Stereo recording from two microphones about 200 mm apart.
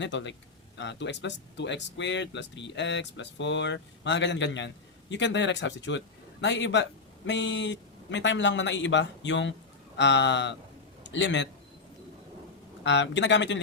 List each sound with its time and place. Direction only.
0.0 s a man's voice: 65° left (ahead or behind)
12.8 s speech: 65° left (ahead or behind)